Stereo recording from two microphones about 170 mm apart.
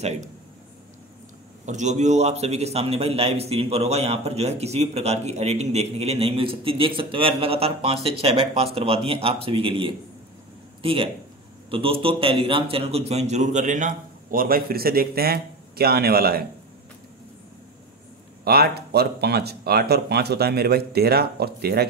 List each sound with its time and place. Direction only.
1.7 s a man's voice: 45° right (ahead or behind); by 16.4 s 65° right (ahead or behind)
18.4 s speech: 70° right (ahead or behind)